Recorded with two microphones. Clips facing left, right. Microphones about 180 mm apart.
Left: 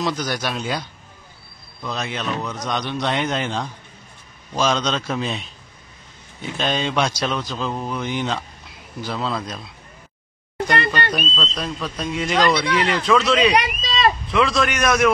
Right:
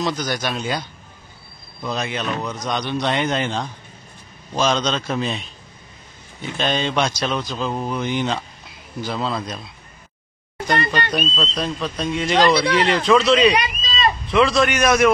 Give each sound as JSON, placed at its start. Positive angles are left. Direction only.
{"t": 0.0, "sound": "a man's voice", "side_deg": 5}
{"t": 10.9, "sound": "a man's voice", "side_deg": 0}
{"t": 12.6, "sound": "speech", "side_deg": -40}
{"t": 13.0, "sound": "a man's voice", "side_deg": 0}
{"t": 13.6, "sound": "a sound", "side_deg": 75}
{"t": 14.3, "sound": "a man's voice", "side_deg": 0}